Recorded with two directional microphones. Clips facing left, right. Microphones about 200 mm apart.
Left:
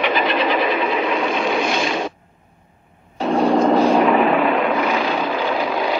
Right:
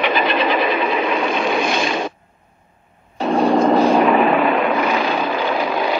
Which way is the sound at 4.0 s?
60° right (ahead or behind).